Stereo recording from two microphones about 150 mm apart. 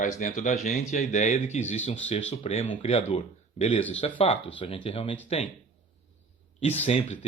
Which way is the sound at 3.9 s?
35° left (ahead or behind).